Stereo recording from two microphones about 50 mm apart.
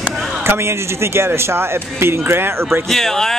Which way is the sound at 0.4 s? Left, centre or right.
Right.